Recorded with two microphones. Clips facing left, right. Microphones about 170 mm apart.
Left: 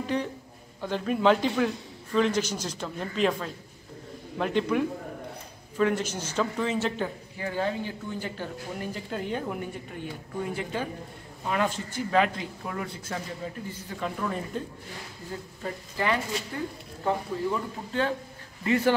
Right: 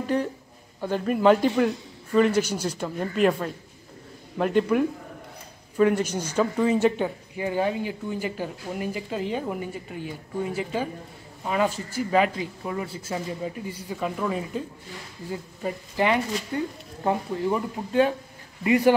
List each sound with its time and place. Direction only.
0.0 s a man's voice: 5° right (ahead or behind)
15.6 s a man's voice: 15° right (ahead or behind)